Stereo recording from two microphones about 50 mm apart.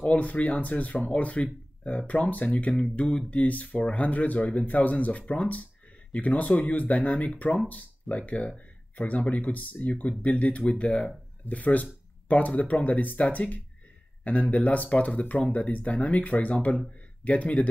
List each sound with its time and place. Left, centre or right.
0.0 s speech: left